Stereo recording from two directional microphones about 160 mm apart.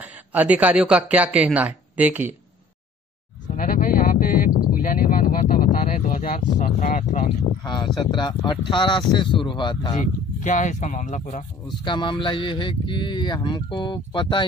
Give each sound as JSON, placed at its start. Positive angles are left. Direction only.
{"t": 0.0, "sound": "speech", "side_deg": -10}
{"t": 3.4, "sound": "a sound", "side_deg": 60}
{"t": 6.3, "sound": "speech", "side_deg": 55}
{"t": 7.6, "sound": "speech", "side_deg": 30}
{"t": 10.4, "sound": "speech", "side_deg": 50}
{"t": 11.8, "sound": "speech", "side_deg": 30}